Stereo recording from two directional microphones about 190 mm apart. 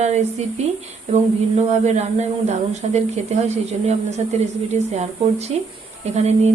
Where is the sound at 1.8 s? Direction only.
35° right (ahead or behind).